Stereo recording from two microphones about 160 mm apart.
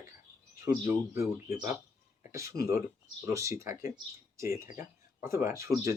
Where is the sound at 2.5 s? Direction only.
70° left (ahead or behind).